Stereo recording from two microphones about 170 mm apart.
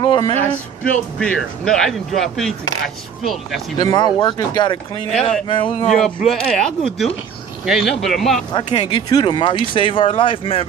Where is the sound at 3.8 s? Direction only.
25° left (ahead or behind).